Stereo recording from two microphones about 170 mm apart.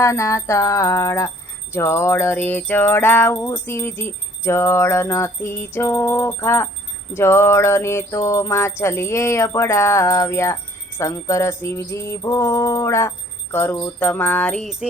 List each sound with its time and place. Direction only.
0.0 s jingle bell: 15° left (ahead or behind); by 14.8 s centre (ahead or behind)